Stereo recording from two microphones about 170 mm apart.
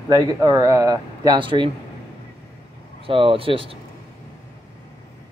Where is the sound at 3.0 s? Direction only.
30° right (ahead or behind).